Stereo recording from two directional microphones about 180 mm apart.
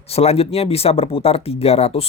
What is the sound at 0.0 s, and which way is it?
Speech, 35° left (ahead or behind).